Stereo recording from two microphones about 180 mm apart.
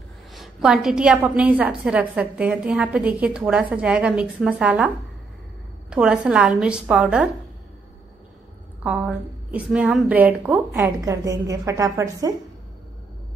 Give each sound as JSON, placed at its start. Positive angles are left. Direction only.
{"t": 0.3, "sound": "a woman's voice", "side_deg": 0}
{"t": 8.8, "sound": "a woman's voice", "side_deg": -5}